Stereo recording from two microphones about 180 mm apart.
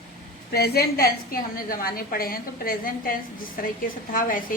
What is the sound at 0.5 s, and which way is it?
A woman's voice, 60° left (ahead or behind).